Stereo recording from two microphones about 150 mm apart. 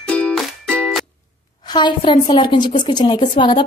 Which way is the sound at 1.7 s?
30° left (ahead or behind).